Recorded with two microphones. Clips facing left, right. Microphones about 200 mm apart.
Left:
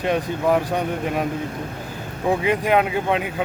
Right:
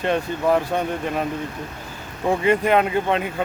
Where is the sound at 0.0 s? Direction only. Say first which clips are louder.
Even; 10° left (ahead or behind).